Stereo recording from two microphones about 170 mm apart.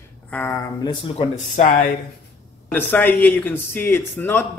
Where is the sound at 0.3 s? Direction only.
10° left (ahead or behind).